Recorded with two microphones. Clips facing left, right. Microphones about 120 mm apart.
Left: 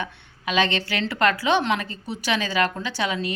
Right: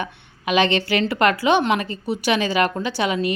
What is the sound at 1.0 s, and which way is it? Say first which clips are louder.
A woman's voice: right 1 dB; 5° right (ahead or behind).